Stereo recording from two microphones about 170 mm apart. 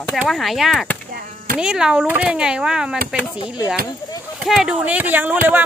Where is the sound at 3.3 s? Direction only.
30° left (ahead or behind).